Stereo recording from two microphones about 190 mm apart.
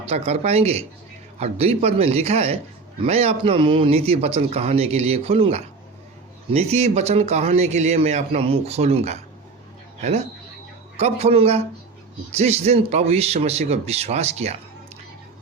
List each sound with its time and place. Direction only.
0.0 s a man's voice: 35° right (ahead or behind)